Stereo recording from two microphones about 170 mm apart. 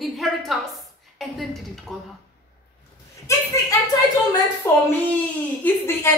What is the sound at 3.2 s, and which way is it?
A woman's voice, 20° left (ahead or behind).